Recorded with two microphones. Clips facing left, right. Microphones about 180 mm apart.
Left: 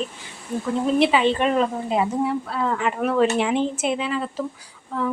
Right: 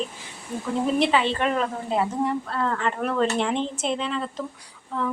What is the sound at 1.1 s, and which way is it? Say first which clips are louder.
A woman's voice: left 4 dB; 15° left (ahead or behind).